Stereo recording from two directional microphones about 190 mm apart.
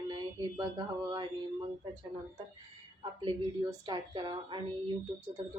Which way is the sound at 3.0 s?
25° right (ahead or behind).